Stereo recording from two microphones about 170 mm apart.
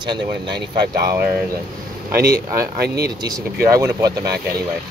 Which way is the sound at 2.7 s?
65° right (ahead or behind).